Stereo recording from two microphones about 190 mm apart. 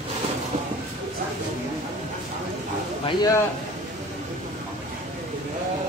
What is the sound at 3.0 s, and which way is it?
Speech, 20° left (ahead or behind).